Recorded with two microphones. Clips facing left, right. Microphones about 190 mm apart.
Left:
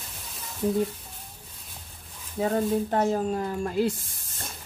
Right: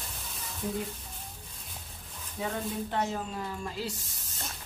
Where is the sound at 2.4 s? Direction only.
45° left (ahead or behind).